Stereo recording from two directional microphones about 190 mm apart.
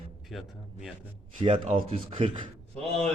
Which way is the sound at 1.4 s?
30° right (ahead or behind).